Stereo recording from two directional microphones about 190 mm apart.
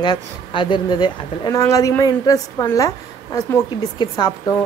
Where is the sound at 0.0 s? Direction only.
25° left (ahead or behind).